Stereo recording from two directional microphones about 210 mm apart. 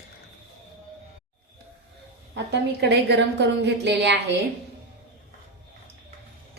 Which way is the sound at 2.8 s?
55° right (ahead or behind).